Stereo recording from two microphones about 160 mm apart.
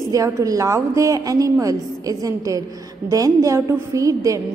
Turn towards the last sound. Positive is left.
turn(degrees=-20)  # may be behind; listen again after turning